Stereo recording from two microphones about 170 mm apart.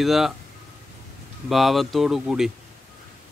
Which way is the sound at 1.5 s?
Centre (ahead or behind).